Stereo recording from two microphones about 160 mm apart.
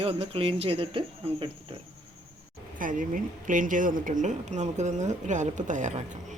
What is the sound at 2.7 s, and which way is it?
Speech, 55° right (ahead or behind).